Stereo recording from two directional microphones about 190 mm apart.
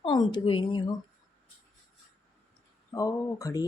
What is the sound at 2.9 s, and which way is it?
Speech, 20° left (ahead or behind).